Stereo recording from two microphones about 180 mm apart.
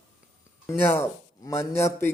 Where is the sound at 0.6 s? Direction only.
15° left (ahead or behind).